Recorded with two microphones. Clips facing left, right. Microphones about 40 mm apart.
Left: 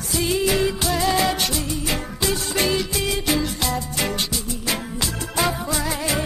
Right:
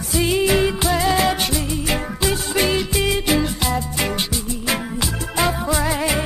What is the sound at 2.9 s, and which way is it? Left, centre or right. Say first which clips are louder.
Music: right 3 dB; right.